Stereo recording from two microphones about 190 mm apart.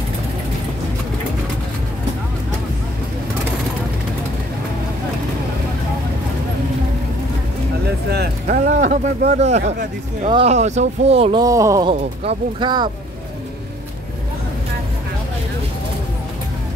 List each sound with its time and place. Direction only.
8.5 s speech: 40° right (ahead or behind)
11.4 s speech: 15° right (ahead or behind)
11.9 s speech: 30° right (ahead or behind)